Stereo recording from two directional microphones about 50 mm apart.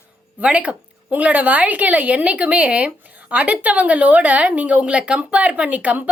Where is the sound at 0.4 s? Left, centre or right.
Right.